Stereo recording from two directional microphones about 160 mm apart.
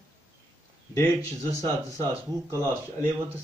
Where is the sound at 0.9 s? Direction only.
20° left (ahead or behind).